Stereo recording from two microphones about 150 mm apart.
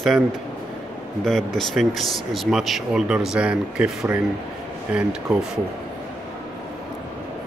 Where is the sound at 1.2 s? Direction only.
5° left (ahead or behind).